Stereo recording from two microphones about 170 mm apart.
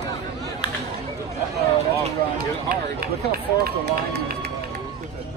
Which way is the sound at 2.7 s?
60° right (ahead or behind).